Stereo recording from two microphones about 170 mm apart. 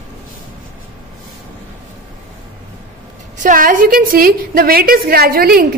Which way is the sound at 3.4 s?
50° right (ahead or behind).